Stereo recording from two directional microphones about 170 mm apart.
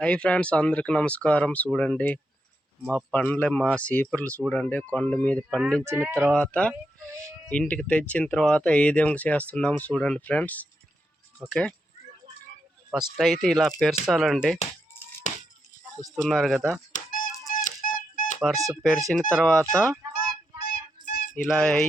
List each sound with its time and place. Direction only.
0.0 s speech: 5° left (ahead or behind)
5.8 s speech: 15° right (ahead or behind)
6.3 s speech: 5° left (ahead or behind)
13.1 s speech: centre (ahead or behind)
15.3 s a sound: 45° left (ahead or behind)
16.1 s speech: centre (ahead or behind)
16.9 s music: 55° left (ahead or behind)
17.5 s squeak: 50° left (ahead or behind)
18.5 s speech: 20° right (ahead or behind)
18.8 s speech: centre (ahead or behind)
20.1 s a sound: 65° left (ahead or behind)
21.3 s speech: 5° left (ahead or behind)